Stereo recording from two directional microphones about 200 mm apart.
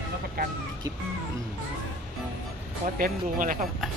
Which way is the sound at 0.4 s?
50° right (ahead or behind).